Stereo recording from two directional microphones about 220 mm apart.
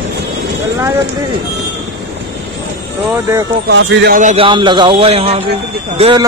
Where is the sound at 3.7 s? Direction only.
50° right (ahead or behind).